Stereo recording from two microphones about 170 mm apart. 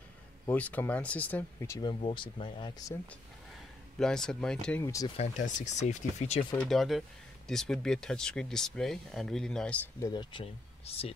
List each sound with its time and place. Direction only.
0.5 s speech: 10° left (ahead or behind); by 2.7 s 30° left (ahead or behind)
4.0 s speech: 5° left (ahead or behind)
4.8 s speech: 20° left (ahead or behind)
5.1 s speech: 40° left (ahead or behind)
6.5 s speech: 5° left (ahead or behind)
9.9 s speech: 20° left (ahead or behind)